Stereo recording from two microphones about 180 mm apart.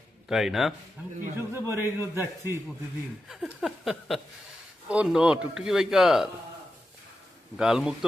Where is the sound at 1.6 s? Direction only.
15° right (ahead or behind).